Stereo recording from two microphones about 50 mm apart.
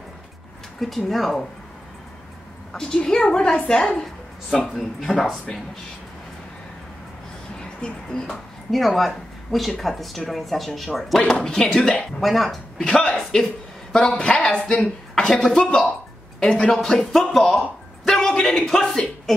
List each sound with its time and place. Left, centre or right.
0.7 s speech: centre
2.7 s speech: centre
4.0 s speech: centre
7.5 s a sound: centre
8.3 s speech: centre
11.1 s speech: centre
12.2 s speech: centre
12.8 s speech: centre
17.6 s a sound: centre